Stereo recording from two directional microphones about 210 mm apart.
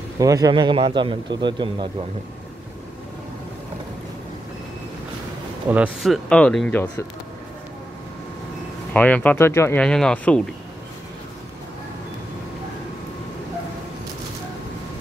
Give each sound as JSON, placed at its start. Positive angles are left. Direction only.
{"t": 0.2, "sound": "speech", "side_deg": -15}
{"t": 5.7, "sound": "speech", "side_deg": -5}
{"t": 6.2, "sound": "speech", "side_deg": 5}
{"t": 8.9, "sound": "speech", "side_deg": 5}